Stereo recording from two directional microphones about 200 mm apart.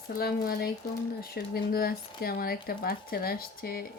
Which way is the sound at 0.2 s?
50° left (ahead or behind).